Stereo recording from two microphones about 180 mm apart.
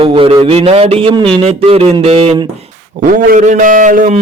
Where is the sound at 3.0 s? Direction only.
50° right (ahead or behind).